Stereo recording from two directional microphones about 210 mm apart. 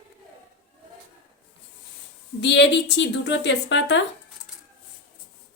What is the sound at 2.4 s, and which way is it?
Speech, 55° left (ahead or behind).